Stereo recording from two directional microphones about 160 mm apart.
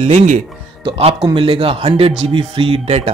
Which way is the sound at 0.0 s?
50° right (ahead or behind).